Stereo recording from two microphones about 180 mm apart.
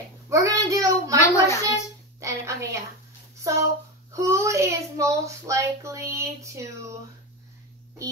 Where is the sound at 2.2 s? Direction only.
15° right (ahead or behind).